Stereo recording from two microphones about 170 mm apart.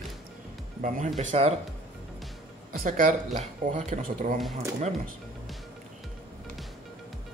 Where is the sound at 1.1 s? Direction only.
40° right (ahead or behind).